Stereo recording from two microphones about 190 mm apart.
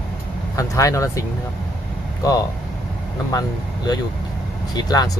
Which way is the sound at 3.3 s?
20° left (ahead or behind).